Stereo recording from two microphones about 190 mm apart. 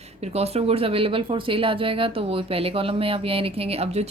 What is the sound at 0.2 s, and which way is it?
Speech, 35° right (ahead or behind).